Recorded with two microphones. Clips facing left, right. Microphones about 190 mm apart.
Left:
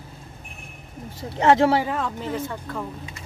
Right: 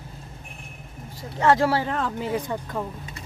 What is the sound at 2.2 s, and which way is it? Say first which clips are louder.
Speech: right 2 dB; 15° right (ahead or behind).